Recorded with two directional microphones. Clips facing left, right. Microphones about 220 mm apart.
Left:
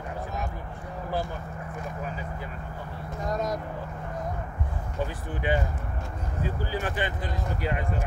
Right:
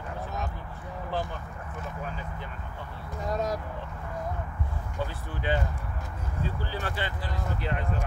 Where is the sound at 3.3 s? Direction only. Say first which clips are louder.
Even; 10° right (ahead or behind).